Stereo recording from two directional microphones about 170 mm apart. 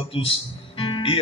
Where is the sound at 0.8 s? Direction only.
30° left (ahead or behind).